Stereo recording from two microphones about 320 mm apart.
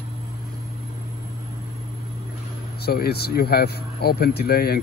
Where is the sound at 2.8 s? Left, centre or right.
Left.